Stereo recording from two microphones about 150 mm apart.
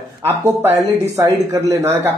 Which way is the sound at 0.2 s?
15° right (ahead or behind).